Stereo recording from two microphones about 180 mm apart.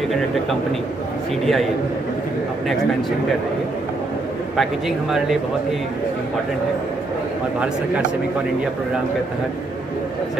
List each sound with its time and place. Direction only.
1.4 s speech: centre (ahead or behind)
4.6 s speech: centre (ahead or behind)